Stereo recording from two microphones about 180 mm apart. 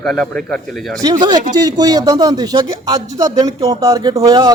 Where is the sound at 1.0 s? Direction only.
20° right (ahead or behind).